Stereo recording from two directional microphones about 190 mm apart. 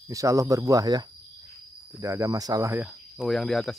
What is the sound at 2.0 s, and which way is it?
Speech, 15° right (ahead or behind).